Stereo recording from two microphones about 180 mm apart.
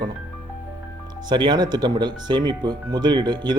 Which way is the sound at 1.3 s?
25° right (ahead or behind).